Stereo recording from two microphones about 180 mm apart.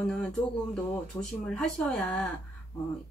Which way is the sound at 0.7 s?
5° left (ahead or behind).